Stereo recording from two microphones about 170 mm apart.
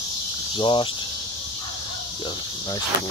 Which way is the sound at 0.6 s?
30° left (ahead or behind).